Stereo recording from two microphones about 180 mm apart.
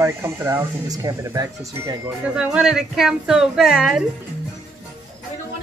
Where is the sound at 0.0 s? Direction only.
15° right (ahead or behind).